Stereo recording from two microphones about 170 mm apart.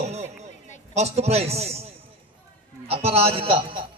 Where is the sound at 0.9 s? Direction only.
40° right (ahead or behind).